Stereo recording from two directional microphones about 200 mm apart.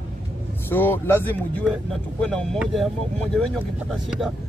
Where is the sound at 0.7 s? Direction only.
10° left (ahead or behind).